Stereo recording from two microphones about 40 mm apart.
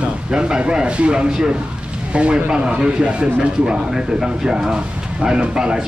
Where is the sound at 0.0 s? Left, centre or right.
Right.